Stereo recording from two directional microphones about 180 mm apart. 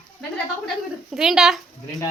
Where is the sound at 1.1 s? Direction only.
Centre (ahead or behind).